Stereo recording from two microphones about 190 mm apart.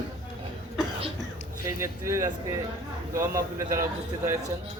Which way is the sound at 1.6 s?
15° right (ahead or behind).